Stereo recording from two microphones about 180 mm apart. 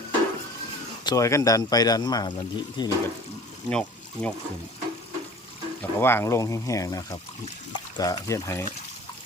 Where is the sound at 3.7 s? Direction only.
5° left (ahead or behind).